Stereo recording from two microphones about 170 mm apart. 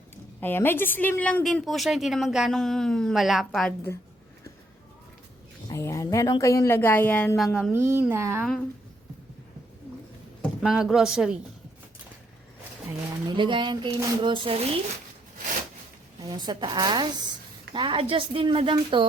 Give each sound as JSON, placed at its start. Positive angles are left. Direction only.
{"t": 0.3, "sound": "a woman's voice", "side_deg": 10}
{"t": 5.6, "sound": "speech", "side_deg": 15}
{"t": 7.3, "sound": "a woman's voice", "side_deg": 0}
{"t": 7.7, "sound": "a sound", "side_deg": -15}
{"t": 8.4, "sound": "a woman's voice", "side_deg": 5}
{"t": 10.6, "sound": "a woman's voice", "side_deg": -5}
{"t": 13.2, "sound": "speech", "side_deg": -30}
{"t": 16.2, "sound": "a woman's voice", "side_deg": -25}